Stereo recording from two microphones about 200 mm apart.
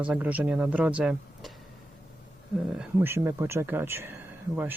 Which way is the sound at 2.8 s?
10° right (ahead or behind).